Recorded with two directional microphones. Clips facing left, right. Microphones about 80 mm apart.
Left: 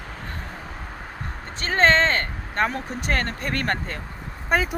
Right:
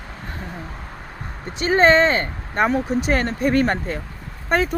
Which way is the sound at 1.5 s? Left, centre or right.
Centre.